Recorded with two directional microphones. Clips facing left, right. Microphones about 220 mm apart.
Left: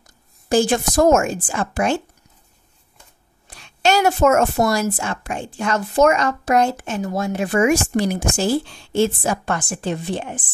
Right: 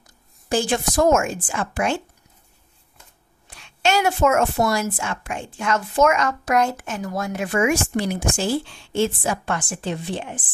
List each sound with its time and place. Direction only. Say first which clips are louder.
0.5 s a woman's voice: left 4 dB; 45° left (ahead or behind)
3.4 s a woman's voice: left 3 dB; 40° left (ahead or behind)